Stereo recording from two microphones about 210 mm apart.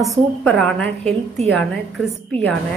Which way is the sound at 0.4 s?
5° left (ahead or behind).